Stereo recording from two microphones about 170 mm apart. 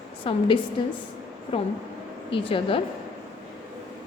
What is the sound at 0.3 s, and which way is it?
A woman's voice, 30° left (ahead or behind).